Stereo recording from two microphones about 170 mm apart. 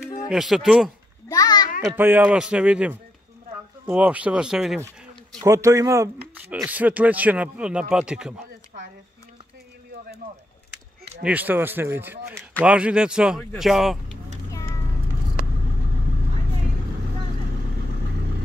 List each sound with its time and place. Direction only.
0.3 s speech: centre (ahead or behind)
1.3 s a sound: 20° left (ahead or behind)
1.9 s speech: 10° right (ahead or behind)
5.4 s speech: 20° right (ahead or behind)
11.2 s speech: 10° right (ahead or behind)